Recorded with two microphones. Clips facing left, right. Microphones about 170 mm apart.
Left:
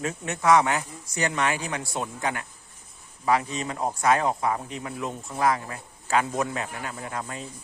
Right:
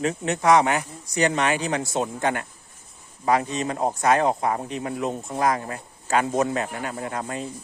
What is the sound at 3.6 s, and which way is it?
Speech, 40° right (ahead or behind).